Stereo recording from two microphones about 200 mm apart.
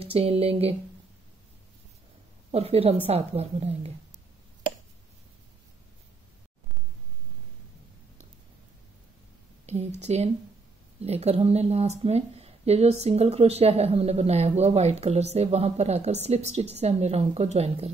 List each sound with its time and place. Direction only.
0.0 s speech: 30° right (ahead or behind)
2.5 s a woman's voice: 30° right (ahead or behind)
9.7 s a woman's voice: 35° right (ahead or behind)